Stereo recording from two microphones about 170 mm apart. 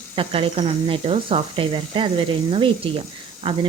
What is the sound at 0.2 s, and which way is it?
A woman's voice, 35° right (ahead or behind).